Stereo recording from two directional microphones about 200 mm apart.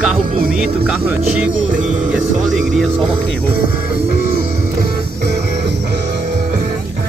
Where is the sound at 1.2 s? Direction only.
40° right (ahead or behind).